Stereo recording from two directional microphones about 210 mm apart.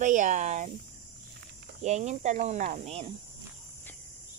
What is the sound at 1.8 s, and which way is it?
Speech, 35° right (ahead or behind).